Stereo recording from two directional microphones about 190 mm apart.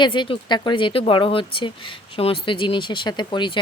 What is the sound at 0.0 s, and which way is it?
Speech, 25° left (ahead or behind).